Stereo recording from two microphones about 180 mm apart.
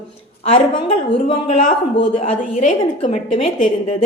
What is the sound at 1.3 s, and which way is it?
Speech, 40° left (ahead or behind).